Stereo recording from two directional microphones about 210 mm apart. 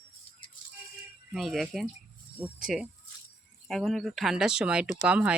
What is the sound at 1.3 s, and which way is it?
Speech, centre (ahead or behind).